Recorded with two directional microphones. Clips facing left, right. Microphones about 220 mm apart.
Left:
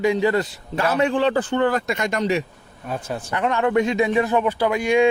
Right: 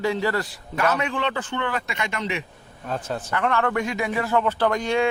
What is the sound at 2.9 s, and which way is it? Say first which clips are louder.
A man's voice: left 1 dB; 15° left (ahead or behind).